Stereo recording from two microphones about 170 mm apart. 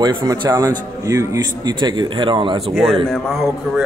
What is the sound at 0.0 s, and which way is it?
A man's voice, 25° right (ahead or behind).